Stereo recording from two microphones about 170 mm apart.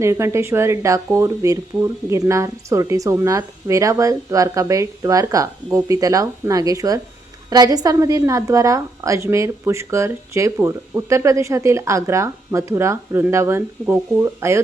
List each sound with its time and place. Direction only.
0.0 s a woman's voice: 15° right (ahead or behind)